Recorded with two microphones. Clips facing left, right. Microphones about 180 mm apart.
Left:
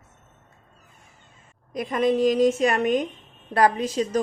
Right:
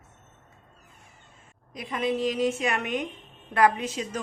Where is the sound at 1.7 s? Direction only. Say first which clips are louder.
Left 6 dB; 45° left (ahead or behind).